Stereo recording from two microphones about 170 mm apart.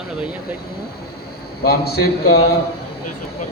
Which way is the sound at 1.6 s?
65° left (ahead or behind).